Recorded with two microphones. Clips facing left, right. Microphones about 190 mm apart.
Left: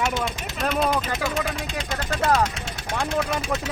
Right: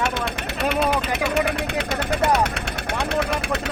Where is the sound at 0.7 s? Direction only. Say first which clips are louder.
Even; 65° right (ahead or behind).